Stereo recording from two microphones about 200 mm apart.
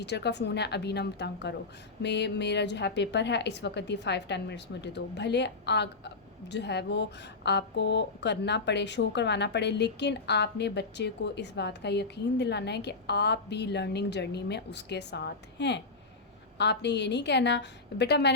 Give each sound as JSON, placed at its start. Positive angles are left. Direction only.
{"t": 0.0, "sound": "a woman's voice", "side_deg": 55}